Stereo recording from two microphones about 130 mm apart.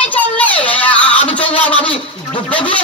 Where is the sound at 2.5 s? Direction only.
10° left (ahead or behind).